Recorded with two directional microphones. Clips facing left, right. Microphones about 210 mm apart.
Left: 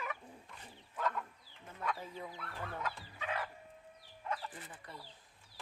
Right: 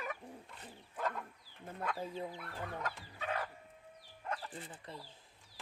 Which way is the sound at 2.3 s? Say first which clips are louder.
Right 1 dB; 15° right (ahead or behind).